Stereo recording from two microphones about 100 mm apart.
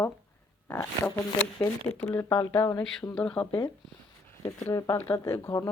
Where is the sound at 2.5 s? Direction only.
50° left (ahead or behind).